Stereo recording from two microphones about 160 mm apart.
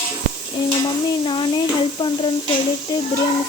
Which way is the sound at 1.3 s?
30° left (ahead or behind).